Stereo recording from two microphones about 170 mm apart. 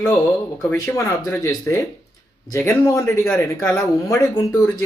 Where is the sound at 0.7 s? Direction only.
15° left (ahead or behind).